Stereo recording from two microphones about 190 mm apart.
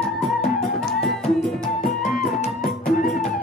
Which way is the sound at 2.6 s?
45° left (ahead or behind).